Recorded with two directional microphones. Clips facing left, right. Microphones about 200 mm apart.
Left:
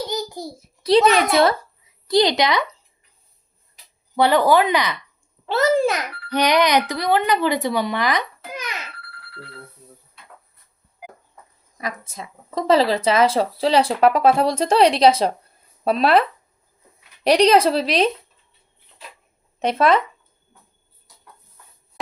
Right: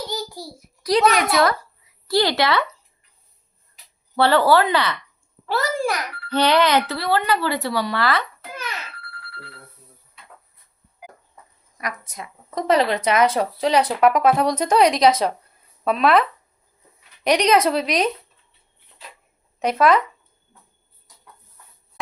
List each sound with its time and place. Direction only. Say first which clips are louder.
0.1 s a child's voice: left 3 dB; 20° left (ahead or behind)
4.1 s a child's voice: even; 15° left (ahead or behind)
11.8 s speech: left 1 dB; 25° left (ahead or behind)
17.2 s a woman's voice: left 3 dB; 30° left (ahead or behind)
19.5 s speech: even; 25° left (ahead or behind)